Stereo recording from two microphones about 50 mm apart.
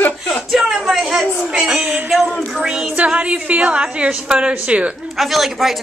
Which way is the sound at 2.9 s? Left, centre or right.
Right.